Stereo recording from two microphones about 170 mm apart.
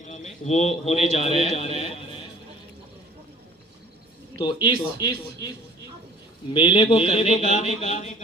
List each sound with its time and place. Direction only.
0.1 s a man's voice: 40° left (ahead or behind)
4.6 s speech: 25° left (ahead or behind)
6.5 s a man's voice: 30° left (ahead or behind)